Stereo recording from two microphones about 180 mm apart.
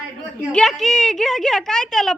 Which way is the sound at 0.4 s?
Centre (ahead or behind).